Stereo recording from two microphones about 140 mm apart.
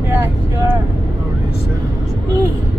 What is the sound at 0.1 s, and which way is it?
Vehicle, 15° right (ahead or behind).